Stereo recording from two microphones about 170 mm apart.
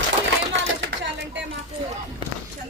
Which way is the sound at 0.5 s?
90° right.